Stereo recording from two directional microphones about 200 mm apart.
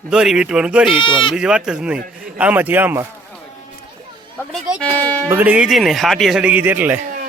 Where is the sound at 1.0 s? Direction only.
25° left (ahead or behind).